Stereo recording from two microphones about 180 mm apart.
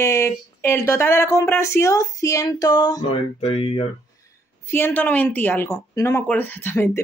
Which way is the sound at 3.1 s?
35° left (ahead or behind).